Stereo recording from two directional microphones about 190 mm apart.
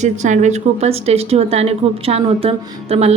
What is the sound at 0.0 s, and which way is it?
A woman's voice, 40° right (ahead or behind).